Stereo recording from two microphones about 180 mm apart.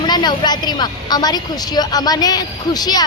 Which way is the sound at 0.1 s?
25° left (ahead or behind).